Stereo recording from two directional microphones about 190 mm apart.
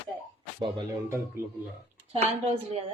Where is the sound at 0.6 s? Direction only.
20° right (ahead or behind).